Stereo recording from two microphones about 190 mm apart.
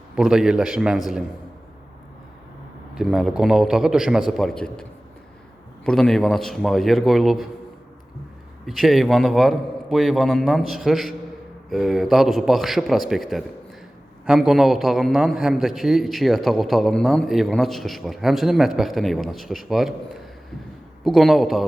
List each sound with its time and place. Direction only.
0.2 s a man's voice: 5° right (ahead or behind)
2.9 s a man's voice: 5° right (ahead or behind)
8.6 s a man's voice: centre (ahead or behind)
21.0 s a man's voice: centre (ahead or behind)